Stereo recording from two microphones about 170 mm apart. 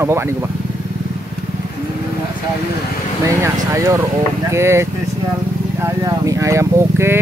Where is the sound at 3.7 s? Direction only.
15° right (ahead or behind).